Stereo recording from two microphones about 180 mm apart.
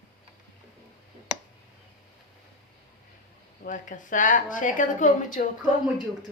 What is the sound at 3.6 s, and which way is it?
A woman's voice, 45° left (ahead or behind).